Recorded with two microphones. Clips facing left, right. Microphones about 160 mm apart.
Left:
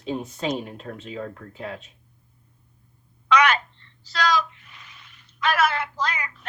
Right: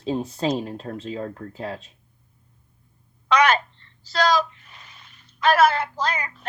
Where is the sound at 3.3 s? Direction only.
35° right (ahead or behind).